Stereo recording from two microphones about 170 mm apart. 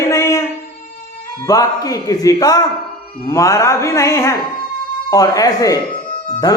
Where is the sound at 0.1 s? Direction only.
15° left (ahead or behind).